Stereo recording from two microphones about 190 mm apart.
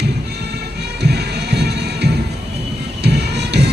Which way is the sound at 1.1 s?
60° right (ahead or behind).